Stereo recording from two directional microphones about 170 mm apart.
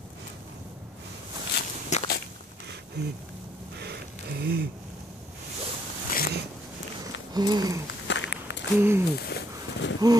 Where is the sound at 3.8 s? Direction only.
70° right (ahead or behind).